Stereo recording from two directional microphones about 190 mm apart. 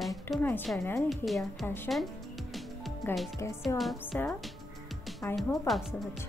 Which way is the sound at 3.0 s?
10° left (ahead or behind).